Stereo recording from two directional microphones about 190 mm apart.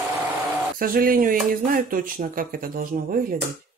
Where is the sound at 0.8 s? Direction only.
50° right (ahead or behind).